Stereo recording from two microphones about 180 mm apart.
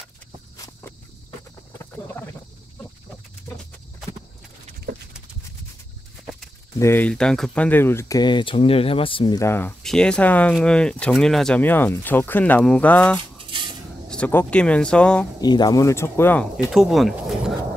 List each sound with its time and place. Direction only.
6.8 s speech: 10° left (ahead or behind); by 9.4 s 30° left (ahead or behind)
9.4 s speech: 15° left (ahead or behind)
13.2 s a sound: 25° right (ahead or behind)
14.0 s speech: 5° left (ahead or behind)
15.4 s speech: 20° left (ahead or behind)
16.7 s speech: centre (ahead or behind)